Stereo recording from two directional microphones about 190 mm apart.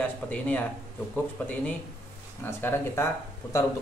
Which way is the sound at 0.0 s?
10° left (ahead or behind).